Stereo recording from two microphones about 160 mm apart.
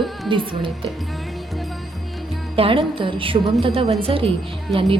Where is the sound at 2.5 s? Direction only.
35° right (ahead or behind).